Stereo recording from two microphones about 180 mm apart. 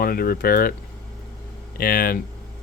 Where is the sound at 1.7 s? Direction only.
55° left (ahead or behind).